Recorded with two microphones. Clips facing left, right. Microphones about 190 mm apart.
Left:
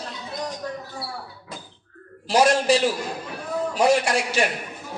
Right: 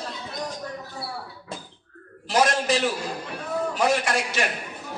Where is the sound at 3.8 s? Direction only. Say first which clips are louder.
Left 5 dB; 30° left (ahead or behind).